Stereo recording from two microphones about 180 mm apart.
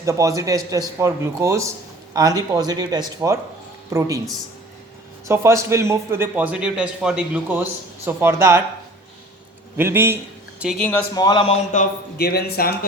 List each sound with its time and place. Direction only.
0.0 s a man's voice: 15° right (ahead or behind)
5.3 s a man's voice: 15° right (ahead or behind)
9.7 s a man's voice: 10° right (ahead or behind)
10.8 s speech: 10° left (ahead or behind)
11.1 s a man's voice: 20° left (ahead or behind)
12.1 s speech: 60° left (ahead or behind)